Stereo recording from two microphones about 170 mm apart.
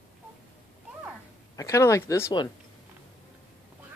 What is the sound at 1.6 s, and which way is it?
Speech, 20° left (ahead or behind).